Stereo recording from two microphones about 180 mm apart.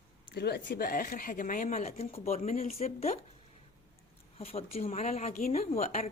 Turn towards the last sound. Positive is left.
turn(degrees=35)  # may be behind; listen again after turning